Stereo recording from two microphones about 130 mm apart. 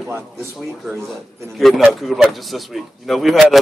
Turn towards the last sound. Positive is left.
turn(degrees=0)  # may be behind; listen again after turning